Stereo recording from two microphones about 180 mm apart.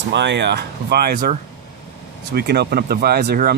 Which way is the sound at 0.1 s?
75° right (ahead or behind).